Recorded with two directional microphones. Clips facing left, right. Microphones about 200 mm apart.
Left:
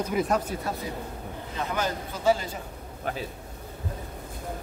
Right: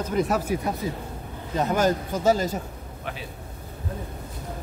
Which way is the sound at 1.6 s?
45° right (ahead or behind).